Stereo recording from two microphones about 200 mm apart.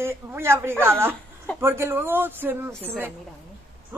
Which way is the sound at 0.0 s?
10° right (ahead or behind).